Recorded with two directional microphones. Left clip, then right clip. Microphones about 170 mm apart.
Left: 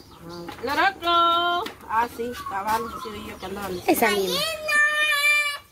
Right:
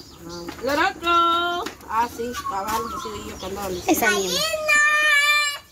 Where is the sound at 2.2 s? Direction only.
20° left (ahead or behind).